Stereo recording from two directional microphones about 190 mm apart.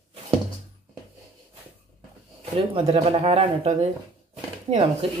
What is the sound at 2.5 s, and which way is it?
Speech, 30° right (ahead or behind).